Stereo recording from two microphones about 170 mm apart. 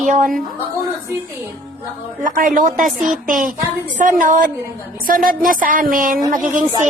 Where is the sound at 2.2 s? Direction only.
50° right (ahead or behind).